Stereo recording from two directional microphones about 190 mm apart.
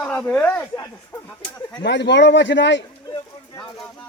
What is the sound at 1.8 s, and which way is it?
A man's voice, 65° left (ahead or behind).